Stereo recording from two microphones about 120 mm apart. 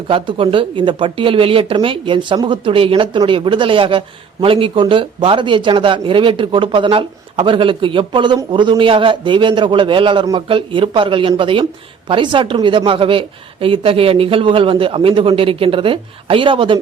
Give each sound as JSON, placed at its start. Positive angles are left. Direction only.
{"t": 0.1, "sound": "speech", "side_deg": -45}